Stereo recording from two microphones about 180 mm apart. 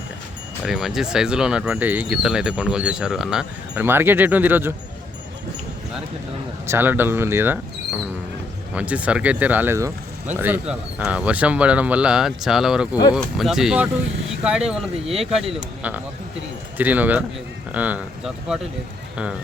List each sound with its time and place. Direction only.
0.6 s speech: centre (ahead or behind)
6.7 s speech: 10° right (ahead or behind)
8.7 s speech: 5° right (ahead or behind)
16.7 s speech: 10° right (ahead or behind)